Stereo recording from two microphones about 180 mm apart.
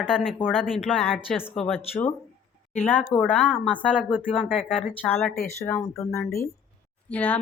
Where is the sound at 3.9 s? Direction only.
5° right (ahead or behind).